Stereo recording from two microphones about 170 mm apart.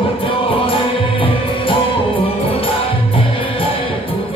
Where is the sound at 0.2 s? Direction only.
30° left (ahead or behind).